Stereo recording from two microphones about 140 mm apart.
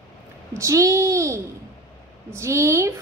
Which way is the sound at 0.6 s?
20° right (ahead or behind).